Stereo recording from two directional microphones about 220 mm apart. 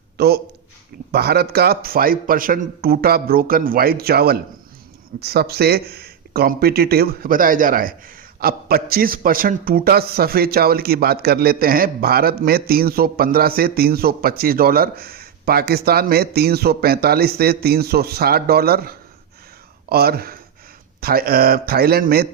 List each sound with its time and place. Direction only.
0.2 s speech: 45° right (ahead or behind)